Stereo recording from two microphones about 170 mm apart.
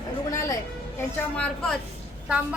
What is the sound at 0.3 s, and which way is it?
Music, 20° left (ahead or behind).